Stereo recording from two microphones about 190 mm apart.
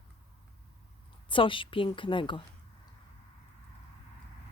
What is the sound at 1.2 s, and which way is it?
A woman's voice, 25° left (ahead or behind).